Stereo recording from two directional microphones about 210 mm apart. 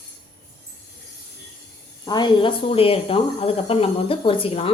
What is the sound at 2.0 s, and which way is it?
Speech, 20° left (ahead or behind).